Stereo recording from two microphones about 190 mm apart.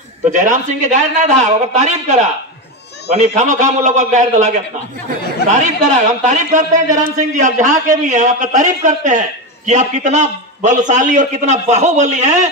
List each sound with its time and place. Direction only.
0.3 s a man's voice: 40° right (ahead or behind)